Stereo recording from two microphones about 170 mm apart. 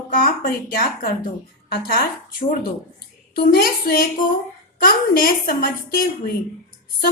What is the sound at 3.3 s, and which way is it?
A child's voice, 60° left (ahead or behind).